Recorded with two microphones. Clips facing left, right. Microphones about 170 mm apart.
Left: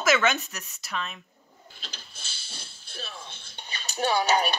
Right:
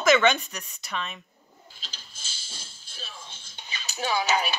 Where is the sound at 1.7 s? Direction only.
60° left (ahead or behind).